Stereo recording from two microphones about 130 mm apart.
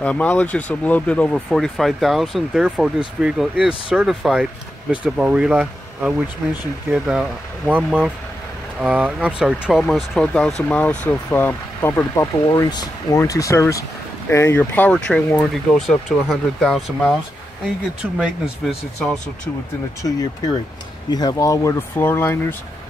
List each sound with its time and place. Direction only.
0.0 s speech: 10° left (ahead or behind)
12.4 s speech: 35° left (ahead or behind); by 17.1 s 5° left (ahead or behind)
18.1 s speech: 5° right (ahead or behind)
20.0 s speech: 30° left (ahead or behind)